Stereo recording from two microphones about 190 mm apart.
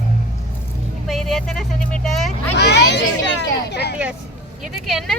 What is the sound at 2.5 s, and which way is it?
Speech, 60° left (ahead or behind).